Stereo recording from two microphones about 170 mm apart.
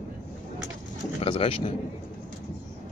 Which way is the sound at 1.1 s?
30° left (ahead or behind).